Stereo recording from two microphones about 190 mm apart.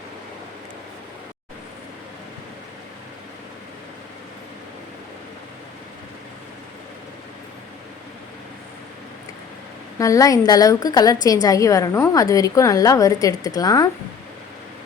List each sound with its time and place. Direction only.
10.0 s a woman's voice: 15° left (ahead or behind)